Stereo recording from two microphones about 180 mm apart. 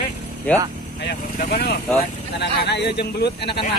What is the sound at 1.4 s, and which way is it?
Speech, 60° left (ahead or behind).